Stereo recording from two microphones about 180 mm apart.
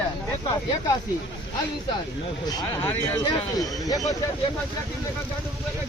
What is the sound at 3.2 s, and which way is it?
Speech, 20° left (ahead or behind).